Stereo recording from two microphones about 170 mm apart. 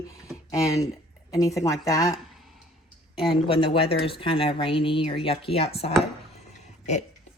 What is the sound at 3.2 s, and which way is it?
Speech, 30° left (ahead or behind).